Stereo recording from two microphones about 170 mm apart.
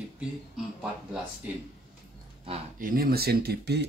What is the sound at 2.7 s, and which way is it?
Speech, 55° right (ahead or behind).